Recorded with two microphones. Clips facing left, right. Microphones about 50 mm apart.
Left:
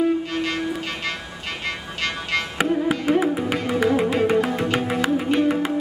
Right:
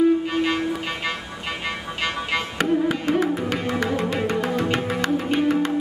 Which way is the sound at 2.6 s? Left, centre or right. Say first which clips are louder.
Even; centre.